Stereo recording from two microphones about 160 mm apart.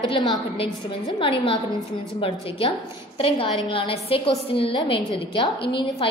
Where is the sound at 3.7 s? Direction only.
35° left (ahead or behind).